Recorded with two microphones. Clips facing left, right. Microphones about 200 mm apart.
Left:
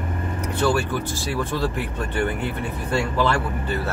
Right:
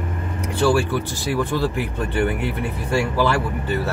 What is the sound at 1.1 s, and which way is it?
Speech, 15° right (ahead or behind).